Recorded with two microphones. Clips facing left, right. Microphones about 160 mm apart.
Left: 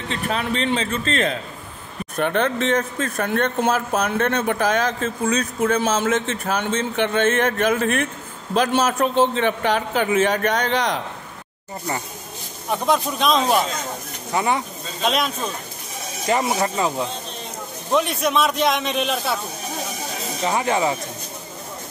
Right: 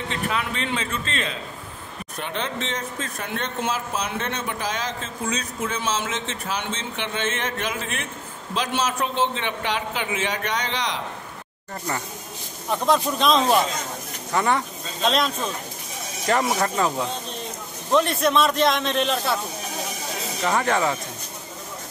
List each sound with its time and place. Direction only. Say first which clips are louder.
0.1 s a man's voice: left 5 dB; 35° left (ahead or behind)
2.1 s a man's voice: left 9 dB; 55° left (ahead or behind)
12.6 s a man's voice: even; 5° left (ahead or behind)
17.9 s a man's voice: even; centre (ahead or behind)
20.4 s speech: left 1 dB; 15° left (ahead or behind)